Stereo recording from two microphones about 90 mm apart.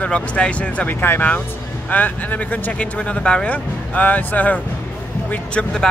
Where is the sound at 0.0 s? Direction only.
10° left (ahead or behind).